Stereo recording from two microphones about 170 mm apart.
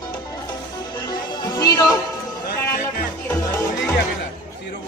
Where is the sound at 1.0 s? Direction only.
20° left (ahead or behind).